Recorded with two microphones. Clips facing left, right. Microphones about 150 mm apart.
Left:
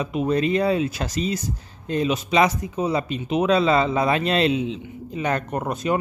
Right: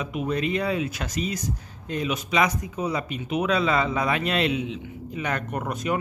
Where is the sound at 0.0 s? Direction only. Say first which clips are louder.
Left 5 dB; 30° left (ahead or behind).